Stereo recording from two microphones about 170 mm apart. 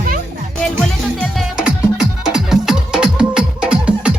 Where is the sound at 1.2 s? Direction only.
Centre (ahead or behind).